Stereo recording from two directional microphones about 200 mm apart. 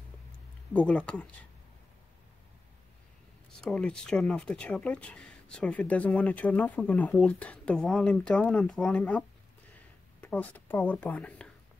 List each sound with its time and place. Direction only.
0.7 s speech: 5° left (ahead or behind)
3.6 s speech: 5° left (ahead or behind)
10.2 s speech: 5° left (ahead or behind)